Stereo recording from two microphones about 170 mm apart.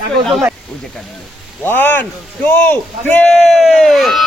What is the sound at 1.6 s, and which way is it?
A man's voice, 10° left (ahead or behind).